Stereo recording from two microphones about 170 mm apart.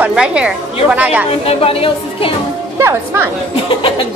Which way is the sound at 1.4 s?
35° left (ahead or behind).